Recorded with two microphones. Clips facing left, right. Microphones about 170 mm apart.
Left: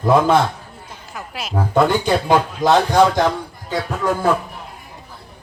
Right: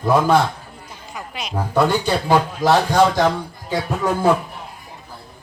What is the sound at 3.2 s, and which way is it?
Speech, 10° right (ahead or behind).